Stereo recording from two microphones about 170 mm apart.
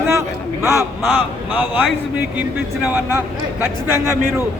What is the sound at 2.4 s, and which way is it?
A man's voice, 10° right (ahead or behind).